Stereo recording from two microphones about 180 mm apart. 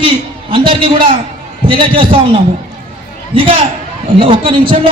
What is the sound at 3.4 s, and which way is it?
A man's voice, 30° right (ahead or behind).